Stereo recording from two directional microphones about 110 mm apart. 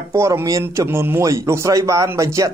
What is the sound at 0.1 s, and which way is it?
A man's voice, 25° right (ahead or behind).